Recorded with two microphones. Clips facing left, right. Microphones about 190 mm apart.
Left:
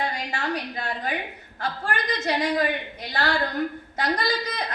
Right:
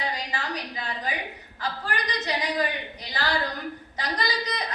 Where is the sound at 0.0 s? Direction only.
50° left (ahead or behind).